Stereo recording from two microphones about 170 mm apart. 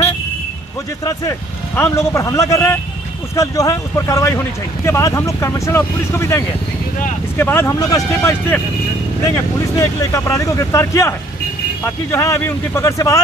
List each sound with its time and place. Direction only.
1.8 s speech: 15° left (ahead or behind)
9.8 s speech: 15° left (ahead or behind)